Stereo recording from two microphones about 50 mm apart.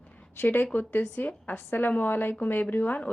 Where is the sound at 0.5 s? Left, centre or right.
Left.